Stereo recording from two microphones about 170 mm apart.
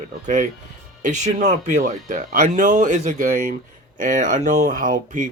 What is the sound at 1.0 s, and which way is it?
Speech, 45° right (ahead or behind).